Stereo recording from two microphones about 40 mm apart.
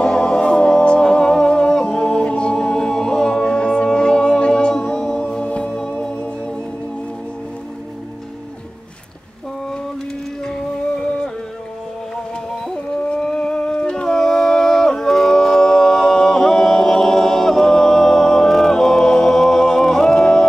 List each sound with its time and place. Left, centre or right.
0.0 s music: left
10.4 s music: centre
13.3 s music: left
13.8 s howl: centre